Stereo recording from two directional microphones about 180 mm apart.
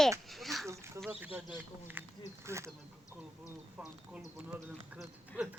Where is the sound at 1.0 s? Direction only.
5° right (ahead or behind).